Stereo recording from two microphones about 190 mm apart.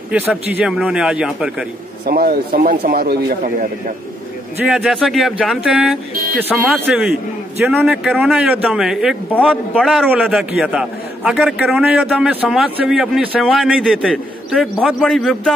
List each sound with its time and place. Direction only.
0.1 s a man's voice: 10° right (ahead or behind)
2.0 s a man's voice: 50° right (ahead or behind)
4.6 s a man's voice: 5° right (ahead or behind)